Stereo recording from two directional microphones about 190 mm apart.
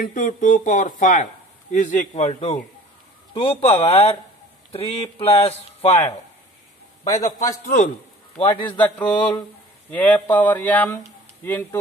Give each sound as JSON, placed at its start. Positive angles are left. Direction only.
{"t": 0.0, "sound": "speech", "side_deg": 45}
{"t": 7.2, "sound": "a man's voice", "side_deg": 40}
{"t": 8.6, "sound": "speech", "side_deg": 10}